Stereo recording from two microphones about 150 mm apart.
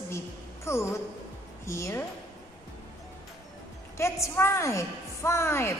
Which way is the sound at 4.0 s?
20° left (ahead or behind).